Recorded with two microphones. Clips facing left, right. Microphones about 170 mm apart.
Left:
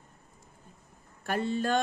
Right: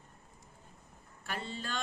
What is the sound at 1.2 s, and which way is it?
Speech, 55° left (ahead or behind).